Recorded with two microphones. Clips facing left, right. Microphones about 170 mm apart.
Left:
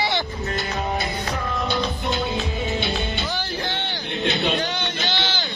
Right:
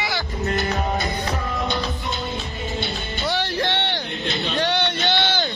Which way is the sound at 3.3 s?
75° right (ahead or behind).